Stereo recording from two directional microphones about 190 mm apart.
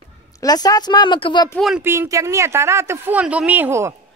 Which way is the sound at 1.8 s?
15° right (ahead or behind).